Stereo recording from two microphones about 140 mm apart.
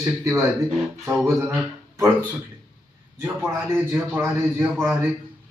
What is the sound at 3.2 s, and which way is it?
Mantra, 15° right (ahead or behind).